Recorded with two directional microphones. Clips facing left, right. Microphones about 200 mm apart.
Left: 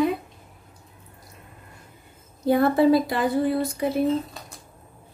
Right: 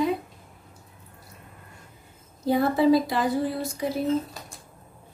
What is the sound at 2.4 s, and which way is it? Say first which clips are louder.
Speech: left 2 dB; 55° left (ahead or behind).